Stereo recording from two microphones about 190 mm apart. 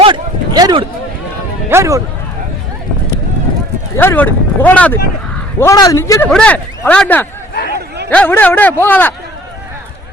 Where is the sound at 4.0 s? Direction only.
10° left (ahead or behind).